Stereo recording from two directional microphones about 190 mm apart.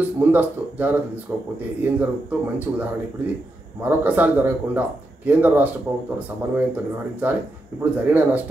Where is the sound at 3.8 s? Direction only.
10° right (ahead or behind).